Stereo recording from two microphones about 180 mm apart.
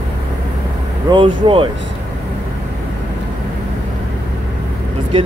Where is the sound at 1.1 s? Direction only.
25° right (ahead or behind).